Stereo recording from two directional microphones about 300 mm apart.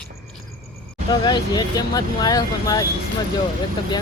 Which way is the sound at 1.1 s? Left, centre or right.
Centre.